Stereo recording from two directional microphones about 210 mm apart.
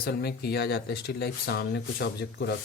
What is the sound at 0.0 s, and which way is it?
Speech, 50° left (ahead or behind).